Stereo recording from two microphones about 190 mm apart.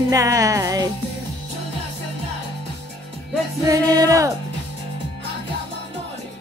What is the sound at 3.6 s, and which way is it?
Music, 20° right (ahead or behind).